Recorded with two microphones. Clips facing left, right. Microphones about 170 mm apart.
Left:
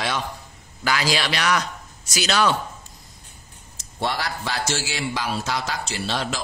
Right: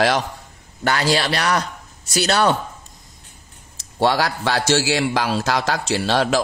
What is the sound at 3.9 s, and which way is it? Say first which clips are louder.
A man's voice: right 8 dB; 90° right.